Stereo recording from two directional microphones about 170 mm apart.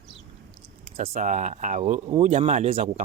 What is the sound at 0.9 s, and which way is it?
Speech, 45° right (ahead or behind).